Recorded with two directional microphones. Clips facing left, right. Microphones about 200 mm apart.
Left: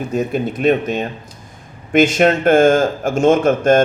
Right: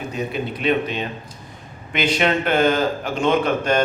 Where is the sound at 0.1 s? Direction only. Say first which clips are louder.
Left 7 dB; 45° left (ahead or behind).